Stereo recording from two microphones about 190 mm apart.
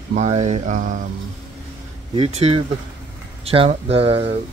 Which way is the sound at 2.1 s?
30° right (ahead or behind).